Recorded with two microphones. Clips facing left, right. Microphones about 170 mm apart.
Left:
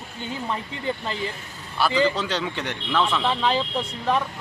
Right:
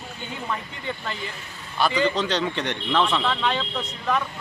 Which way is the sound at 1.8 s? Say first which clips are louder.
Left 1 dB; 5° left (ahead or behind).